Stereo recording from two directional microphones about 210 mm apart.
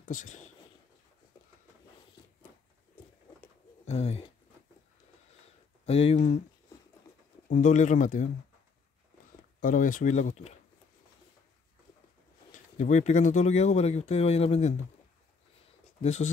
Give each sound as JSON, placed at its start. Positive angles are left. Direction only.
{"t": 0.0, "sound": "speech", "side_deg": 40}
{"t": 3.8, "sound": "speech", "side_deg": 30}
{"t": 5.9, "sound": "speech", "side_deg": 30}
{"t": 7.5, "sound": "speech", "side_deg": 35}
{"t": 9.6, "sound": "speech", "side_deg": 40}
{"t": 12.7, "sound": "speech", "side_deg": 35}
{"t": 16.0, "sound": "speech", "side_deg": 30}